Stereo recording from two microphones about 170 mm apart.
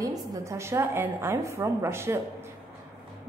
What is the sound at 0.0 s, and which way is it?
A woman's voice, 20° right (ahead or behind).